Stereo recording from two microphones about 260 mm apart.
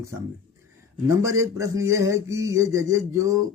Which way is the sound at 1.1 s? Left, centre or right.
Centre.